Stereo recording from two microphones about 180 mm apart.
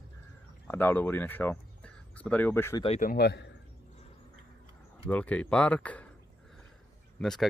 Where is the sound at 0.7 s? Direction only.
10° left (ahead or behind).